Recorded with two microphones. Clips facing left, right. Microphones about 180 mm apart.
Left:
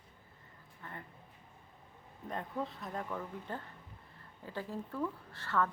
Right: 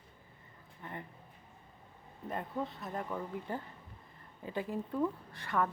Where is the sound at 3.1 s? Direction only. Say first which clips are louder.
Right 3 dB; 10° right (ahead or behind).